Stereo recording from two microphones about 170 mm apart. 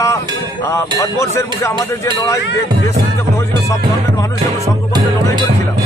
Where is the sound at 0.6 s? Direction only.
15° left (ahead or behind).